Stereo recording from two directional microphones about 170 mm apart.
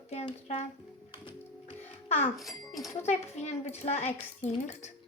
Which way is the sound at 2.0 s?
40° left (ahead or behind).